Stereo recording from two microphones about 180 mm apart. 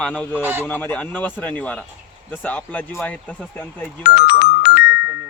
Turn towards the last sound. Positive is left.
turn(degrees=60)  # may be behind; listen again after turning